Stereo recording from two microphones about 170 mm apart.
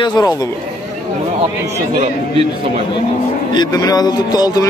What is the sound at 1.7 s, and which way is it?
Speech, 40° right (ahead or behind).